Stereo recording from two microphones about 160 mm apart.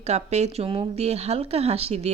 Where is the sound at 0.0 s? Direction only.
45° right (ahead or behind).